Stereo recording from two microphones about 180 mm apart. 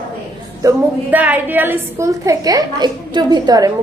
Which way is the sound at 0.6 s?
15° right (ahead or behind).